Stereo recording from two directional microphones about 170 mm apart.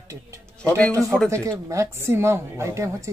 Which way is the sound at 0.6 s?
5° left (ahead or behind).